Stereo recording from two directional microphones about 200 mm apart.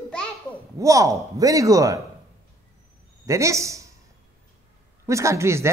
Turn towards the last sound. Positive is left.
turn(degrees=-15)  # may be behind; listen again after turning